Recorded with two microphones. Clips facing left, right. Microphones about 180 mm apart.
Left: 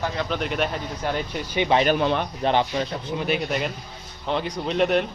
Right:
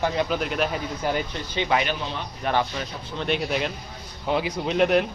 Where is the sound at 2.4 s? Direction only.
20° left (ahead or behind).